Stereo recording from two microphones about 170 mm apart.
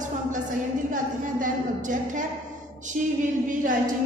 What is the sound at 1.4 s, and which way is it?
Speech, 50° right (ahead or behind).